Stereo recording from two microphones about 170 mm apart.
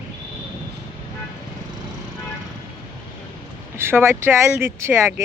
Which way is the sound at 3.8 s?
15° right (ahead or behind).